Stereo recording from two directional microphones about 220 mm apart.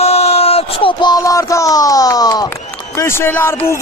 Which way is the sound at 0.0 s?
25° left (ahead or behind).